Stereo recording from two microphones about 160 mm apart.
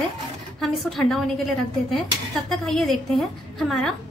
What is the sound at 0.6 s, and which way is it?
Speech, centre (ahead or behind).